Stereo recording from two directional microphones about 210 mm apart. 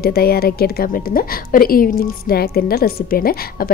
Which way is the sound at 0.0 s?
45° left (ahead or behind).